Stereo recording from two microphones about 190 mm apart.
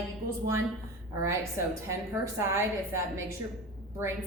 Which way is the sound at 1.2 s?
15° right (ahead or behind).